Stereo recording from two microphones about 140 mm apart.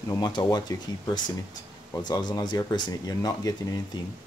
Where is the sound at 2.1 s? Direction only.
30° left (ahead or behind).